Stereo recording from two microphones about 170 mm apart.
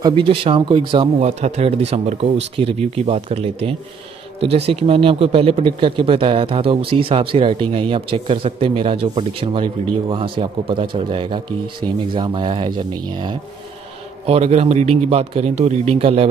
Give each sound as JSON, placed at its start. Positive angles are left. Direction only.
{"t": 0.0, "sound": "a man's voice", "side_deg": -30}